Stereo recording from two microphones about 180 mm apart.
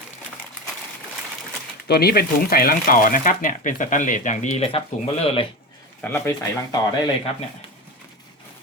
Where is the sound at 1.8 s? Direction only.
60° left (ahead or behind); by 4.8 s 35° left (ahead or behind).